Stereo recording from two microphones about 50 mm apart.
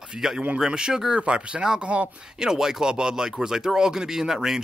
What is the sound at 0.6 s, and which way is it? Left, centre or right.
Speech, centre.